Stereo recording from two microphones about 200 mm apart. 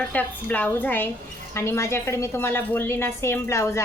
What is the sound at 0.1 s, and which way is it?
A woman's voice, 10° left (ahead or behind).